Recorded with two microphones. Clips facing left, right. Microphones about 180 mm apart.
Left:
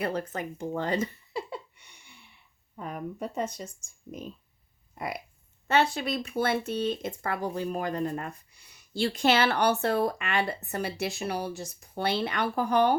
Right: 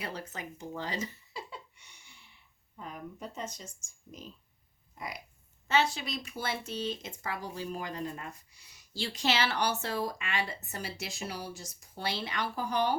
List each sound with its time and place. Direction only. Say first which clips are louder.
0.0 s a sound: left 9 dB; 50° left (ahead or behind)
2.7 s speech: left 7 dB; 60° left (ahead or behind)
5.6 s speech: left 4 dB; 55° left (ahead or behind)